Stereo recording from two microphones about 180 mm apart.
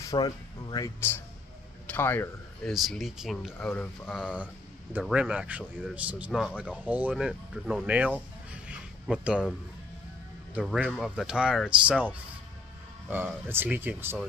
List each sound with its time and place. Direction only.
0.0 s speech: 20° left (ahead or behind)
2.7 s speech: centre (ahead or behind)
3.7 s speech: 10° left (ahead or behind)
4.1 s speech: 5° right (ahead or behind)
8.6 s a sound: 5° right (ahead or behind)
10.5 s speech: 5° right (ahead or behind)